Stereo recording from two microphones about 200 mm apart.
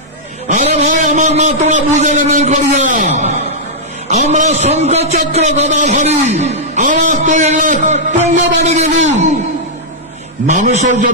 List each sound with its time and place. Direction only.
0.5 s a sound: 35° right (ahead or behind)
4.1 s a man's voice: 35° right (ahead or behind)
10.4 s a man's voice: 35° right (ahead or behind)